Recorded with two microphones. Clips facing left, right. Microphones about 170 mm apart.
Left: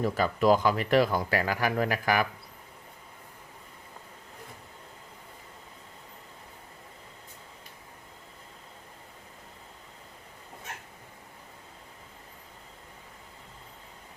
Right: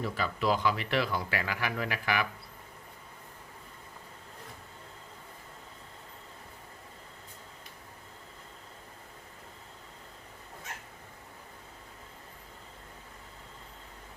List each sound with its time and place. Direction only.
0.0 s speech: 45° left (ahead or behind)